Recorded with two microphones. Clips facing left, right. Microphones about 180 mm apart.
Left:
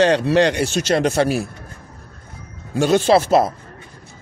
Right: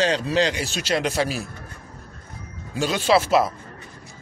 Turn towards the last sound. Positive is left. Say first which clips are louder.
# left 4 dB
turn(degrees=45)  # may be behind; listen again after turning